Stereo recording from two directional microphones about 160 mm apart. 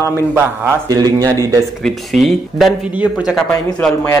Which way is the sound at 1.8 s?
Centre (ahead or behind).